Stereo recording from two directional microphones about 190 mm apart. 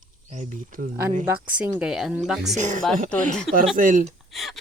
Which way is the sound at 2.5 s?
40° right (ahead or behind).